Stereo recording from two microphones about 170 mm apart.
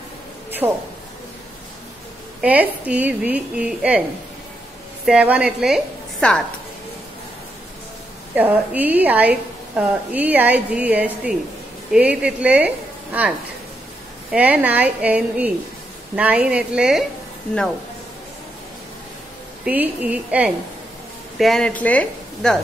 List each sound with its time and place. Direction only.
0.6 s a woman's voice: 20° right (ahead or behind)
2.4 s a woman's voice: 10° right (ahead or behind)
5.0 s a woman's voice: 5° right (ahead or behind)
8.4 s a woman's voice: 10° right (ahead or behind)
14.3 s a woman's voice: 10° right (ahead or behind)
19.6 s a woman's voice: 10° right (ahead or behind); by 22.6 s 5° left (ahead or behind)